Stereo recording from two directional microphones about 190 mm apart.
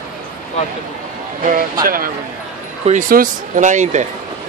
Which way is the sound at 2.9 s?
45° right (ahead or behind).